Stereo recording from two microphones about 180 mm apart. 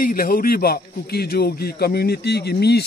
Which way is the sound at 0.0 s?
55° left (ahead or behind).